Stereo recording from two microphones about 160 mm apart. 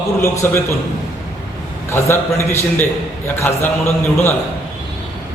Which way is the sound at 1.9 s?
15° left (ahead or behind).